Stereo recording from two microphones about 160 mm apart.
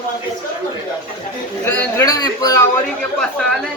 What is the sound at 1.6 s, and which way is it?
Speech, 20° left (ahead or behind).